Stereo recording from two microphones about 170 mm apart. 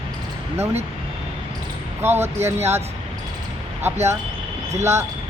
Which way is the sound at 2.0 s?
15° right (ahead or behind).